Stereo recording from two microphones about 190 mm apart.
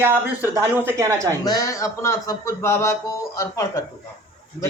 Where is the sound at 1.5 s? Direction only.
20° left (ahead or behind).